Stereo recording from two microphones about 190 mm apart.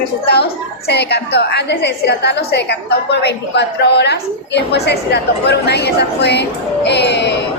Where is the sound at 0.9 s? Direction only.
60° left (ahead or behind).